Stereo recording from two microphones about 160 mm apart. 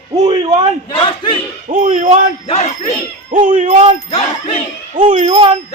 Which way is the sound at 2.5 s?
40° left (ahead or behind).